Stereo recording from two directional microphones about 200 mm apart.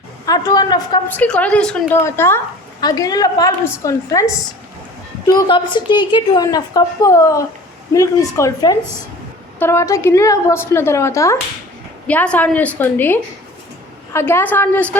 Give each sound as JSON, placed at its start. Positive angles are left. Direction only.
{"t": 0.3, "sound": "a woman's voice", "side_deg": 20}
{"t": 1.1, "sound": "a woman's voice", "side_deg": 5}